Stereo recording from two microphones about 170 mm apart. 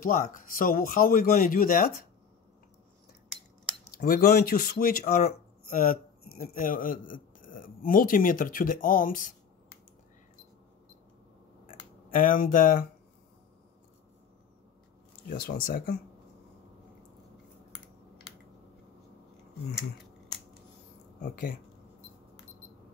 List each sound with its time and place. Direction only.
0.0 s speech: 55° left (ahead or behind)
4.0 s speech: 60° left (ahead or behind)
12.1 s speech: 55° left (ahead or behind)
15.2 s speech: 55° left (ahead or behind)
21.2 s speech: 60° left (ahead or behind)